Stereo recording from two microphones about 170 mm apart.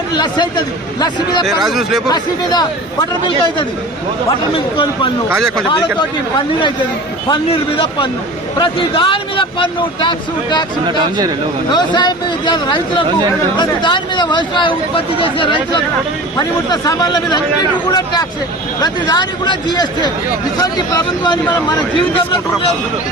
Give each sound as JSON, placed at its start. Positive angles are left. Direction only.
{"t": 0.1, "sound": "speech", "side_deg": 25}
{"t": 1.6, "sound": "speech", "side_deg": 0}
{"t": 2.0, "sound": "speech", "side_deg": 25}
{"t": 7.3, "sound": "a man's voice", "side_deg": 35}
{"t": 11.7, "sound": "a man's voice", "side_deg": 25}
{"t": 21.9, "sound": "a man's voice", "side_deg": 30}